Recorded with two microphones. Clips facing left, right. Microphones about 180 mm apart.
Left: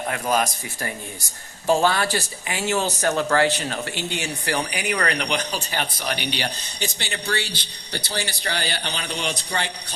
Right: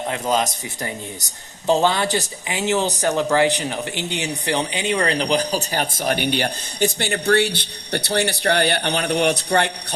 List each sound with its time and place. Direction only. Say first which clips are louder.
0.1 s a man's voice: right 1 dB; 20° right (ahead or behind); by 9.7 s 60° right (ahead or behind)